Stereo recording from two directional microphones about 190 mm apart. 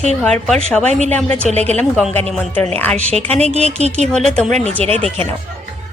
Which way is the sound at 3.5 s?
35° right (ahead or behind).